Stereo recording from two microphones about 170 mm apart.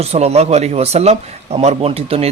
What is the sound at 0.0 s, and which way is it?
A man's voice, 40° right (ahead or behind).